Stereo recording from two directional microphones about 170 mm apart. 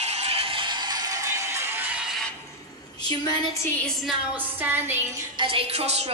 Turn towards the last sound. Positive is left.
turn(degrees=-35)  # may be behind; listen again after turning